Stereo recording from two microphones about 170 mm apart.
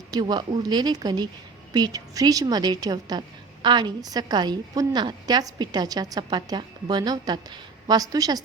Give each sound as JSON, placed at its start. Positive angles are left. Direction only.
{"t": 0.1, "sound": "a woman's voice", "side_deg": -25}